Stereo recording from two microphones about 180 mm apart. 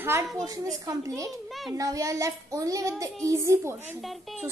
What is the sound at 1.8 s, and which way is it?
Speech, 20° right (ahead or behind).